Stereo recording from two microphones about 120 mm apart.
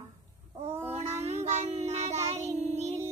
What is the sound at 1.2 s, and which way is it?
Child singing, 70° right (ahead or behind).